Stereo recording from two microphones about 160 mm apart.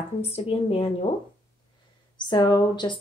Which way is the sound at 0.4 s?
35° left (ahead or behind).